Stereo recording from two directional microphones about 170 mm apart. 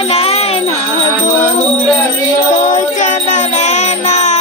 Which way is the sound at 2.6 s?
45° left (ahead or behind).